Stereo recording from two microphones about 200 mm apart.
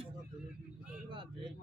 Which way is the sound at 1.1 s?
25° right (ahead or behind).